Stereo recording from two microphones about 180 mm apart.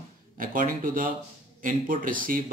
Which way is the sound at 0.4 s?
50° right (ahead or behind).